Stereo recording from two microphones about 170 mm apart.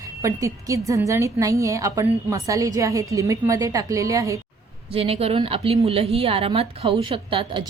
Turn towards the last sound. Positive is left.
turn(degrees=-30)  # may be behind; listen again after turning